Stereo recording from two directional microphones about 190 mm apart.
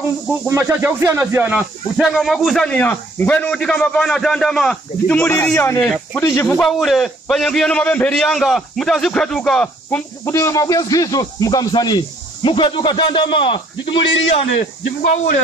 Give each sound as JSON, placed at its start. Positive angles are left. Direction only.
{"t": 0.5, "sound": "a man's voice", "side_deg": -15}
{"t": 6.2, "sound": "speech", "side_deg": 15}
{"t": 6.6, "sound": "a man's voice", "side_deg": 0}